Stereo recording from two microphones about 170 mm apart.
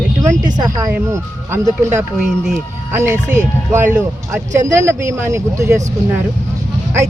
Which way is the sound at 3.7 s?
15° right (ahead or behind).